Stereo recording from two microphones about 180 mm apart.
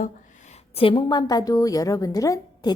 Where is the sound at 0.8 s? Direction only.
30° left (ahead or behind).